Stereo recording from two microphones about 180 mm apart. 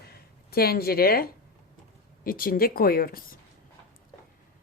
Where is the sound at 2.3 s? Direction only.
50° left (ahead or behind).